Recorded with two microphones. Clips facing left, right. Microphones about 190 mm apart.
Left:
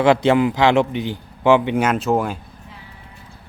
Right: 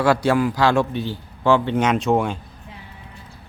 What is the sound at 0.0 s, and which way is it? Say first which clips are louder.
A man's voice: left 3 dB; 20° left (ahead or behind).